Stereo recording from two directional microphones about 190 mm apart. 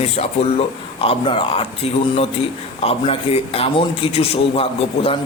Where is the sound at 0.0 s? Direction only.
35° left (ahead or behind).